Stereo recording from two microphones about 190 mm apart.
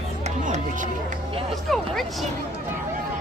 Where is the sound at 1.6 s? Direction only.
Centre (ahead or behind).